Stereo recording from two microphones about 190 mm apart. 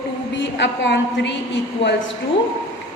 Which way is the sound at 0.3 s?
70° left (ahead or behind).